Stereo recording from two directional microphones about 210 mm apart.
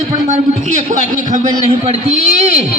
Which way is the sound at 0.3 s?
35° right (ahead or behind).